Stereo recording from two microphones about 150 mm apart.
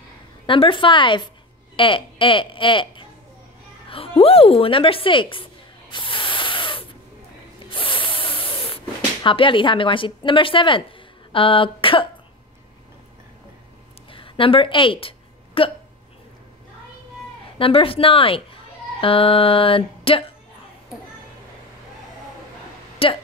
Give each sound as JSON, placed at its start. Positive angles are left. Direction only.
{"t": 0.5, "sound": "speech", "side_deg": 35}
{"t": 3.9, "sound": "a sound", "side_deg": 40}
{"t": 7.7, "sound": "spray", "side_deg": 35}
{"t": 14.1, "sound": "a sound", "side_deg": 35}
{"t": 17.6, "sound": "speech", "side_deg": 40}
{"t": 23.0, "sound": "speech", "side_deg": 40}